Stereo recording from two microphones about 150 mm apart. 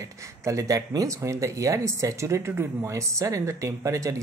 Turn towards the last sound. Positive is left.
turn(degrees=-20)  # may be behind; listen again after turning